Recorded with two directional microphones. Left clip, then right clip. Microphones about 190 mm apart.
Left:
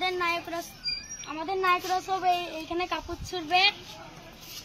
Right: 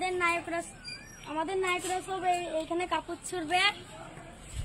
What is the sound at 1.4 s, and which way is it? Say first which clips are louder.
Speech: left 5 dB; 30° left (ahead or behind).